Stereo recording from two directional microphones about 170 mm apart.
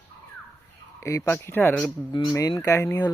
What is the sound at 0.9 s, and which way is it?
Speech, 20° left (ahead or behind).